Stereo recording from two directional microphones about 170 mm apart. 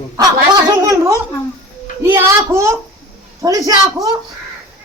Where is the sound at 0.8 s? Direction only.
20° right (ahead or behind).